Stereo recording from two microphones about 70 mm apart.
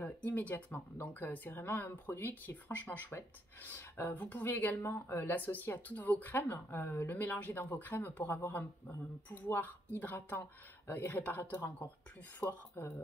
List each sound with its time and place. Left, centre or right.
0.0 s speech: left
11.5 s speech: left
12.4 s speech: left